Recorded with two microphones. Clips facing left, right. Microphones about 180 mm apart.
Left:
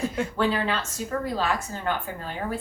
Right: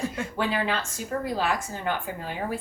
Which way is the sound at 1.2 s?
15° right (ahead or behind).